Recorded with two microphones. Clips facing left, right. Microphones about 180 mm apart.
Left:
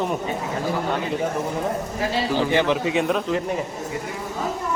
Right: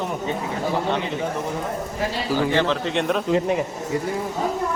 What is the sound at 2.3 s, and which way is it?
Speech, 15° left (ahead or behind).